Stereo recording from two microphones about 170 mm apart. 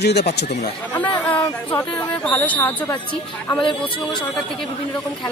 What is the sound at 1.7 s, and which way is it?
Speech, 10° left (ahead or behind).